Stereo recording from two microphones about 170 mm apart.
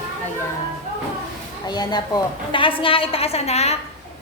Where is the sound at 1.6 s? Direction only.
25° left (ahead or behind).